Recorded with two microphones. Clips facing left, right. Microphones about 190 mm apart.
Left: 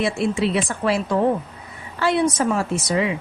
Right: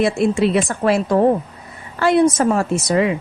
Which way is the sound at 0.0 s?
45° right (ahead or behind).